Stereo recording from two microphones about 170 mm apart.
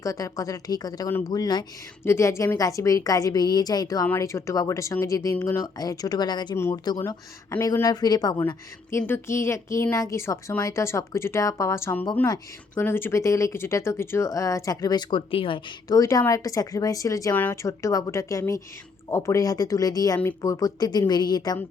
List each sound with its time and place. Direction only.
0.0 s a woman's voice: 20° left (ahead or behind)